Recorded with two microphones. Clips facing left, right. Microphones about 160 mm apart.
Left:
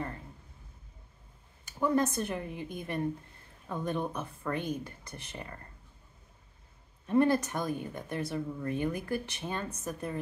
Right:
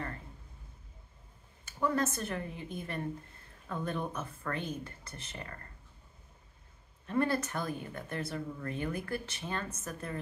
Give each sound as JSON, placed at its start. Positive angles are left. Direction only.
{"t": 1.7, "sound": "speech", "side_deg": 15}
{"t": 7.1, "sound": "speech", "side_deg": 15}